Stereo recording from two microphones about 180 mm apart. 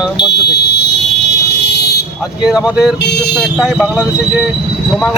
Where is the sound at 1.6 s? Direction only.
65° left (ahead or behind).